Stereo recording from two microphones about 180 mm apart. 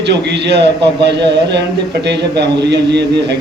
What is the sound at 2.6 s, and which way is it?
Speech, 70° right (ahead or behind).